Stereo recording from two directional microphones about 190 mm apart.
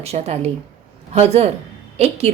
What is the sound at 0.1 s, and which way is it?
A woman's voice, 35° right (ahead or behind).